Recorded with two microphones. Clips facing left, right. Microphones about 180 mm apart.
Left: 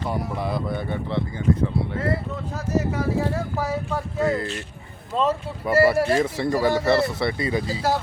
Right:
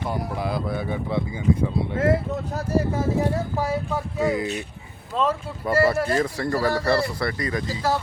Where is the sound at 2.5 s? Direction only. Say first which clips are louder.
Even; 25° right (ahead or behind).